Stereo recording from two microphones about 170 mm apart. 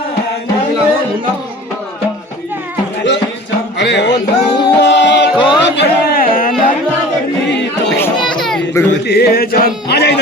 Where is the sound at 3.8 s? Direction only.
90° left.